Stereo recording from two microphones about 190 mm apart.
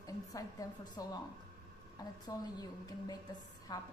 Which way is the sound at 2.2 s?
20° left (ahead or behind).